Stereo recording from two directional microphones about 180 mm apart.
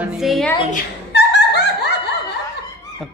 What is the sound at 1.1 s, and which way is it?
Laughter, 75° left (ahead or behind).